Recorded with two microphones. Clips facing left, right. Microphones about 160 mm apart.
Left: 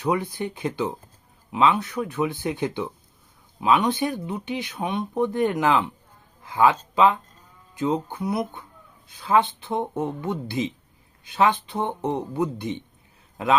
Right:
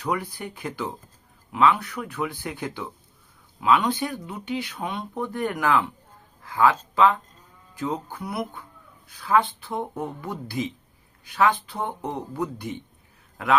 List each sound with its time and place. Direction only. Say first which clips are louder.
0.0 s a man's voice: left 4 dB; 20° left (ahead or behind)